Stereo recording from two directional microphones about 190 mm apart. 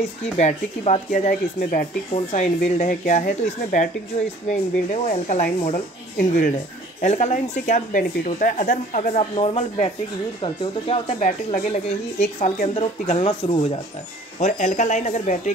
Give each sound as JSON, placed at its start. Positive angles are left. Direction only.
{"t": 0.4, "sound": "speech", "side_deg": 35}
{"t": 5.1, "sound": "speech", "side_deg": 40}